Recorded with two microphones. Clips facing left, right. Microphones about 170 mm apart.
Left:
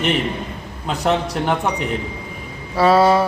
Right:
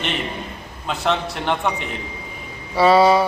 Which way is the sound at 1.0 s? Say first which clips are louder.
Left 3 dB; 15° left (ahead or behind).